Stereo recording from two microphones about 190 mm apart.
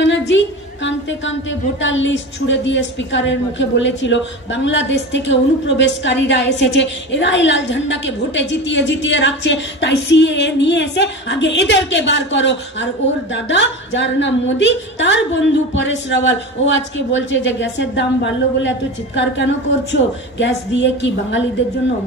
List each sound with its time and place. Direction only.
0.0 s a woman's voice: 70° left (ahead or behind)